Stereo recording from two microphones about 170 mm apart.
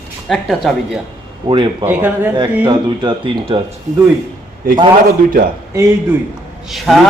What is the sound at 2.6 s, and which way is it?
Speech, 30° right (ahead or behind).